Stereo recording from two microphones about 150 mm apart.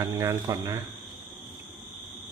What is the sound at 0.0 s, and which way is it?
Speech, 20° right (ahead or behind).